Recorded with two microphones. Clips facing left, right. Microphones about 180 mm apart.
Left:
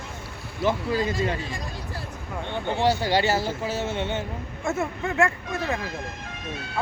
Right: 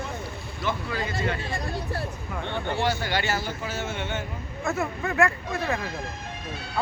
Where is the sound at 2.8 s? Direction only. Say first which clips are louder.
Left 6 dB; 35° left (ahead or behind).